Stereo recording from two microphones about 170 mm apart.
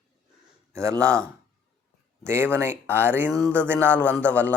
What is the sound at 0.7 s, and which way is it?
Speech, 15° right (ahead or behind).